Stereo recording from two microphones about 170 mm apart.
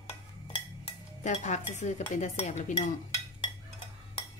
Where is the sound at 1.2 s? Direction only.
45° left (ahead or behind).